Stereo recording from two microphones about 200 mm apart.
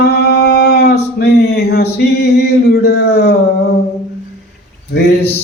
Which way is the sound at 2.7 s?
55° left (ahead or behind).